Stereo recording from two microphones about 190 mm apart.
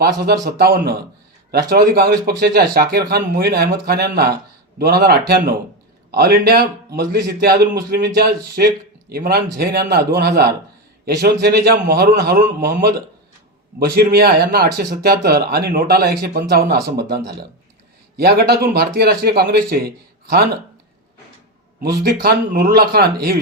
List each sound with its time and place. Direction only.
0.6 s speech: 55° right (ahead or behind)
21.8 s speech: 55° right (ahead or behind)